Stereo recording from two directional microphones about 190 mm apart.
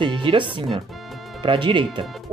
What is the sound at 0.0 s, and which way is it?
Speech, 25° right (ahead or behind).